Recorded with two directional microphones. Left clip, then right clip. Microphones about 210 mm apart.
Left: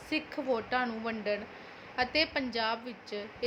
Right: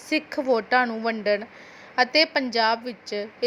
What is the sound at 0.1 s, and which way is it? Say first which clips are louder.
A woman's voice: right 9 dB; 35° right (ahead or behind).